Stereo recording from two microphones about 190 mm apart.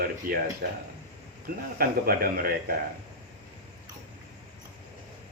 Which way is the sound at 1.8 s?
50° right (ahead or behind).